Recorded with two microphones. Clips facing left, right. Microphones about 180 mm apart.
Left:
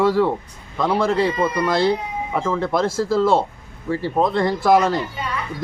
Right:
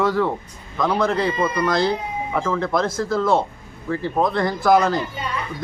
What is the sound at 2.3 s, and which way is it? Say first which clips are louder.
Speech: left 1 dB; 15° left (ahead or behind).